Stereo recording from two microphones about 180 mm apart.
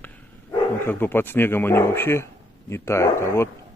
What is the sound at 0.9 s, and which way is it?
A man's voice, 10° left (ahead or behind).